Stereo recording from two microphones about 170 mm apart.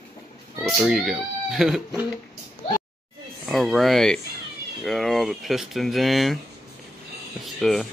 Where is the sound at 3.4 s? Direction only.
Centre (ahead or behind).